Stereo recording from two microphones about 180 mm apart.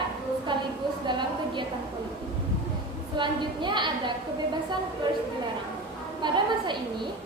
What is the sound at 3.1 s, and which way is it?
Speech, 25° right (ahead or behind).